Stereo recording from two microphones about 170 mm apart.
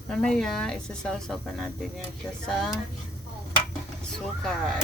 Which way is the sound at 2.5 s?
Centre (ahead or behind).